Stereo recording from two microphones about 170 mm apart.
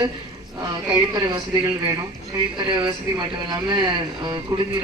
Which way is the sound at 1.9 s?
20° right (ahead or behind).